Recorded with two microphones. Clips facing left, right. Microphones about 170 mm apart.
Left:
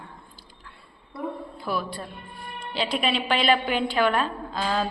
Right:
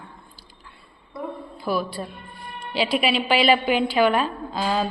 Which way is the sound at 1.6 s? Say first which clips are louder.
Right 5 dB; 5° right (ahead or behind).